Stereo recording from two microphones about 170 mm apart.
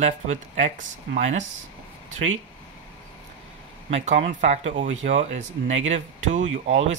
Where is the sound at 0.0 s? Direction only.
45° right (ahead or behind).